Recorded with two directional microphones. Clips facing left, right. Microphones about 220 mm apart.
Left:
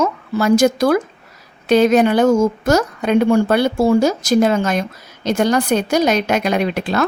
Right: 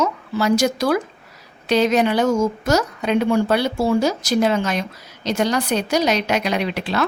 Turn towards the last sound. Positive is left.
turn(degrees=45)  # may be behind; listen again after turning